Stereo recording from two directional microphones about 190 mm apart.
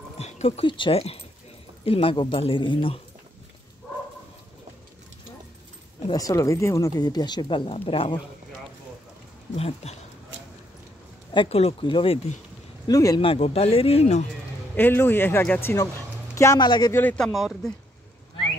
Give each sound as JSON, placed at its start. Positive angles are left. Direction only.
{"t": 0.2, "sound": "speech", "side_deg": 35}
{"t": 6.0, "sound": "speech", "side_deg": 20}
{"t": 9.6, "sound": "speech", "side_deg": 35}
{"t": 10.3, "sound": "a sound", "side_deg": -75}
{"t": 11.3, "sound": "speech", "side_deg": 30}
{"t": 14.8, "sound": "speech", "side_deg": 10}
{"t": 17.0, "sound": "speech", "side_deg": 5}